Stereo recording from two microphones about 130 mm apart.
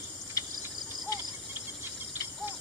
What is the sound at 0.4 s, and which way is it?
Cricket, 30° left (ahead or behind).